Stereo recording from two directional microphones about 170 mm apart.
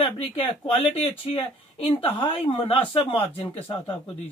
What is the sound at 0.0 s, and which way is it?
Speech, 35° left (ahead or behind).